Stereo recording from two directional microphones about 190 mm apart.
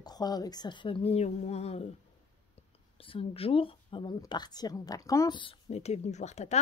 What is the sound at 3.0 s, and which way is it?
Speech, 30° left (ahead or behind).